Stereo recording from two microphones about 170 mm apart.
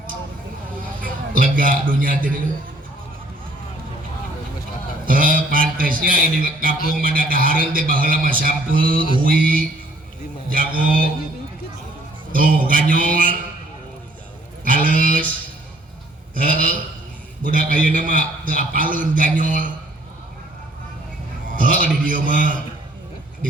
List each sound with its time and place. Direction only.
1.0 s a man's voice: 55° right (ahead or behind)
5.0 s a man's voice: 55° right (ahead or behind)
12.3 s a man's voice: 55° right (ahead or behind)
14.6 s a sound: 55° right (ahead or behind)
16.3 s a sound: 55° right (ahead or behind)
17.4 s a man's voice: 55° right (ahead or behind)
21.5 s a man's voice: 55° right (ahead or behind)